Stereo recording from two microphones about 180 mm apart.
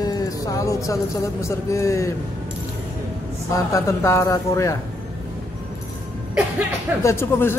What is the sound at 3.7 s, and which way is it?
Speech, 15° left (ahead or behind).